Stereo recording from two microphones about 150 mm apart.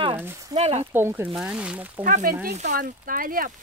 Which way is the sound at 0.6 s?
45° right (ahead or behind).